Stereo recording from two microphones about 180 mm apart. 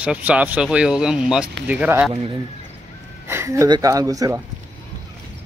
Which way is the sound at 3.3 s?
15° right (ahead or behind).